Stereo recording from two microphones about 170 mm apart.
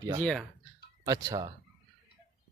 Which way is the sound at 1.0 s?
20° right (ahead or behind).